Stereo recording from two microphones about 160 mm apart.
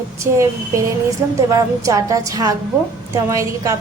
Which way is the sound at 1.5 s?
20° right (ahead or behind).